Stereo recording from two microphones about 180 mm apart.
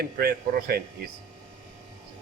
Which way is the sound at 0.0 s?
60° right (ahead or behind).